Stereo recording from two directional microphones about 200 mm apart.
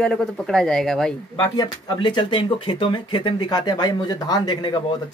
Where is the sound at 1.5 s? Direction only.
20° left (ahead or behind).